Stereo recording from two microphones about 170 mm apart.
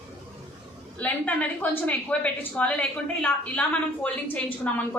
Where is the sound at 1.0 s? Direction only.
10° left (ahead or behind).